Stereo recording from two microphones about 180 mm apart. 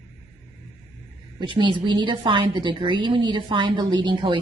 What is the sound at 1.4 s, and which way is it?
A woman's voice, 30° right (ahead or behind).